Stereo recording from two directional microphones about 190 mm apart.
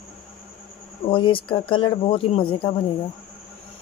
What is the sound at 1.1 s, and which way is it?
Speech, 25° left (ahead or behind).